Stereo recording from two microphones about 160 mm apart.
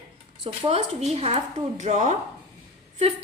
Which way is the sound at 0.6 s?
40° right (ahead or behind).